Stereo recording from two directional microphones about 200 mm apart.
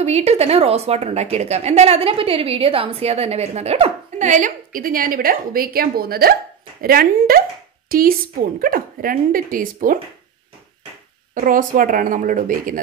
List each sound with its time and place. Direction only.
0.0 s a woman's voice: 35° right (ahead or behind)
11.3 s speech: 45° right (ahead or behind)